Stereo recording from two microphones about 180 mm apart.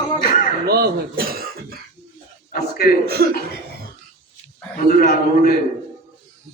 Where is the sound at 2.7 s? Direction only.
55° left (ahead or behind).